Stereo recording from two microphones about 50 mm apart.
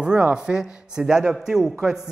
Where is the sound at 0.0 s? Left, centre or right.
Centre.